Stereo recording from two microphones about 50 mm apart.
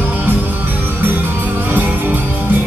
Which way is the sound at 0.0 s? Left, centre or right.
Right.